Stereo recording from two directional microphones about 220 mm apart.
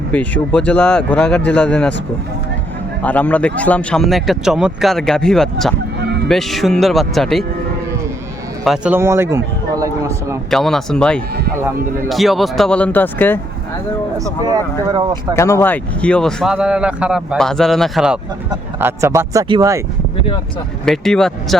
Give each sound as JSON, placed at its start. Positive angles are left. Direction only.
{"t": 0.1, "sound": "speech", "side_deg": 5}
{"t": 3.0, "sound": "speech", "side_deg": 5}
{"t": 6.0, "sound": "music", "side_deg": -50}
{"t": 6.2, "sound": "speech", "side_deg": 0}
{"t": 8.6, "sound": "a man's voice", "side_deg": -5}
{"t": 10.5, "sound": "speech", "side_deg": 0}
{"t": 14.4, "sound": "speech", "side_deg": -20}
{"t": 15.4, "sound": "speech", "side_deg": 15}
{"t": 20.8, "sound": "speech", "side_deg": 0}